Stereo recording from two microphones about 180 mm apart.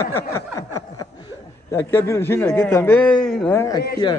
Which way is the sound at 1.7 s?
15° left (ahead or behind).